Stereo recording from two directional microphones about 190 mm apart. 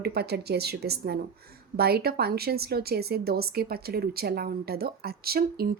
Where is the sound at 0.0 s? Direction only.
55° right (ahead or behind).